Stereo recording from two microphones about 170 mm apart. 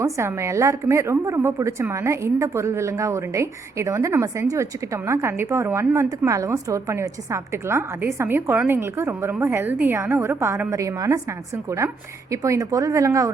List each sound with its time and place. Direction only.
0.0 s a woman's voice: 15° right (ahead or behind)